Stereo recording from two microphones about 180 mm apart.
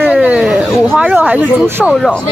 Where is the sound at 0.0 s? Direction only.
5° right (ahead or behind).